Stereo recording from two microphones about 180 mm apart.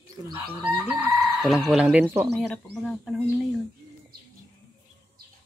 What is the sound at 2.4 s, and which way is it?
Speech, 5° left (ahead or behind).